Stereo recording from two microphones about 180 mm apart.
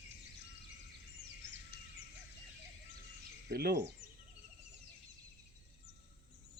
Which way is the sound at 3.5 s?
60° right (ahead or behind).